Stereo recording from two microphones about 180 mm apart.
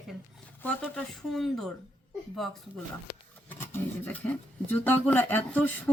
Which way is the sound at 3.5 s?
10° left (ahead or behind).